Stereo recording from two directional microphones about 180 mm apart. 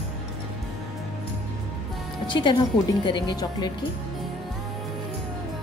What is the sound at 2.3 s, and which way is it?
Speech, 25° left (ahead or behind).